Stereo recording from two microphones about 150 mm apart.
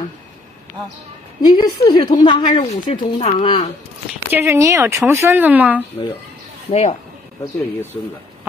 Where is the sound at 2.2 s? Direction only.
40° left (ahead or behind).